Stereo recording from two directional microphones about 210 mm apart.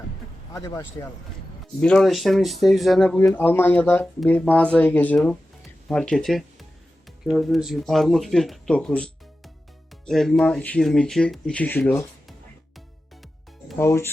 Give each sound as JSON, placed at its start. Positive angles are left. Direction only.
{"t": 0.5, "sound": "speech", "side_deg": 20}
{"t": 1.8, "sound": "speech", "side_deg": 5}
{"t": 13.7, "sound": "speech", "side_deg": 10}